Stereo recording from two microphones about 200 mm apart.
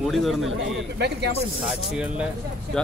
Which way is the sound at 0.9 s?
55° right (ahead or behind).